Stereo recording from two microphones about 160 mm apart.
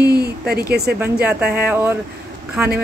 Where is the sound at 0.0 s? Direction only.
80° right.